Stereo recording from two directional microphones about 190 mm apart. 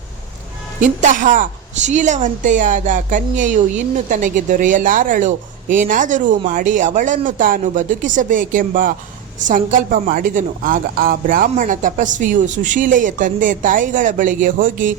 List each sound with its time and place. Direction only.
0.8 s a woman's voice: 40° right (ahead or behind)